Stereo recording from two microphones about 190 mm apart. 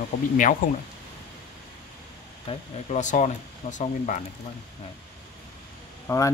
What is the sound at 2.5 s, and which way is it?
Speech, 35° left (ahead or behind).